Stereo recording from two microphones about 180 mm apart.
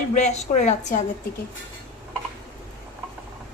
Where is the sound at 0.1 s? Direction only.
40° left (ahead or behind).